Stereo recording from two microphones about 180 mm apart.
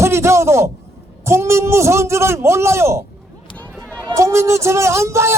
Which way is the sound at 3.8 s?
5° left (ahead or behind).